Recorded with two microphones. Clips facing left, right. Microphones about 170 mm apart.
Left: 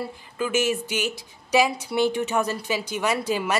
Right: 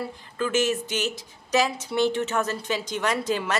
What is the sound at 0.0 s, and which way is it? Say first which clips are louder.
A woman's voice: even; 10° left (ahead or behind).